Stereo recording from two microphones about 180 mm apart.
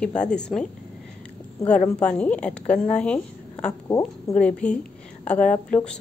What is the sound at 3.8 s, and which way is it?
Speech, 15° left (ahead or behind).